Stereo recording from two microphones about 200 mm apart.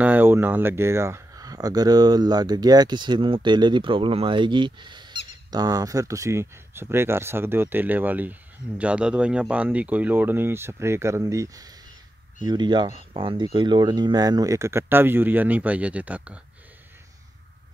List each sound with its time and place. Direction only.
0.0 s speech: 10° right (ahead or behind)